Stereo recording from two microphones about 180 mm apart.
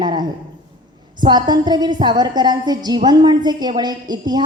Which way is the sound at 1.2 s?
25° right (ahead or behind).